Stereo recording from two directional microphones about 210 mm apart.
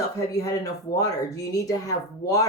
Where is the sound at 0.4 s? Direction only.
15° left (ahead or behind).